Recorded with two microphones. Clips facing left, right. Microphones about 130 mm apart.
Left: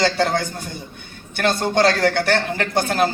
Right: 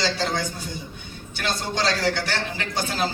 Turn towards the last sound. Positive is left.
turn(degrees=55)  # may be behind; listen again after turning